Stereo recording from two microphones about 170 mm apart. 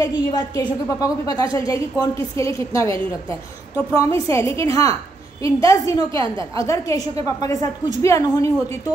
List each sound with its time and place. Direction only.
0.0 s a woman's voice: 25° left (ahead or behind)
6.1 s a woman's voice: 30° right (ahead or behind)
6.6 s a woman's voice: 20° left (ahead or behind)